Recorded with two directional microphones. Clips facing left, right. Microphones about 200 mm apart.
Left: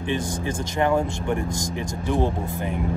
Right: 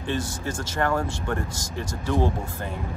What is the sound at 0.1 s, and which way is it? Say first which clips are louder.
Speech: left 2 dB; 15° left (ahead or behind).